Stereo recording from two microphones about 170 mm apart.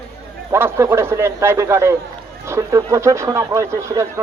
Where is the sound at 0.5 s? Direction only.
15° right (ahead or behind).